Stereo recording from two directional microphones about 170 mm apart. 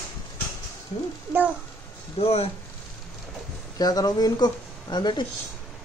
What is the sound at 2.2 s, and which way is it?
Speech, 35° left (ahead or behind).